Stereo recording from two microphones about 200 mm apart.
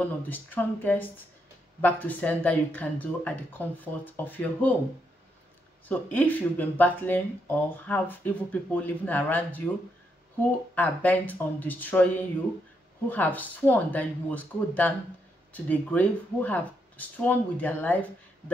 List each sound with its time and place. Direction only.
0.0 s speech: 10° left (ahead or behind)
5.9 s speech: 10° left (ahead or behind)
10.7 s speech: 10° left (ahead or behind)